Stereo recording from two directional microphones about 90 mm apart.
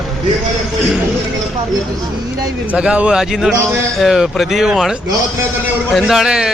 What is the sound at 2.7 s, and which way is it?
A man's voice, 15° right (ahead or behind).